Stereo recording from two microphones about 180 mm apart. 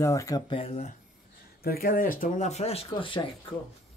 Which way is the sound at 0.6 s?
35° left (ahead or behind).